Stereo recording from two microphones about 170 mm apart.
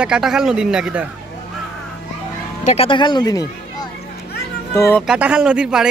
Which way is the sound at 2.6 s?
35° left (ahead or behind).